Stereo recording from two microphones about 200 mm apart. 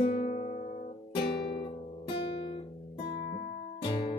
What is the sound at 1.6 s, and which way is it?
Music, 25° left (ahead or behind).